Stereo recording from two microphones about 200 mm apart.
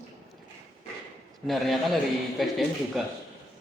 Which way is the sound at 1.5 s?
Centre (ahead or behind).